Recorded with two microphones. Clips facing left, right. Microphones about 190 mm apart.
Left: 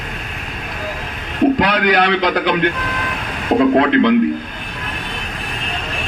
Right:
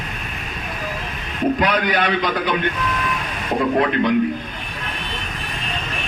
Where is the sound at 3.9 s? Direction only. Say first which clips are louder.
Left 6 dB; 90° left.